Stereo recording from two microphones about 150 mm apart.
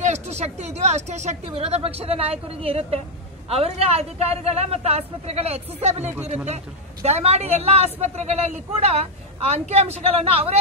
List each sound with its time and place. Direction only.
0.0 s a man's voice: 45° right (ahead or behind)